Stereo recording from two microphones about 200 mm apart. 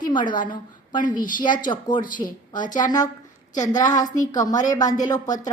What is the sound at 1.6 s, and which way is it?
Speech, 25° left (ahead or behind).